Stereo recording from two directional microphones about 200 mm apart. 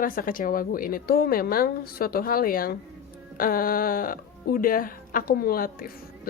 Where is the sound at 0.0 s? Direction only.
45° left (ahead or behind).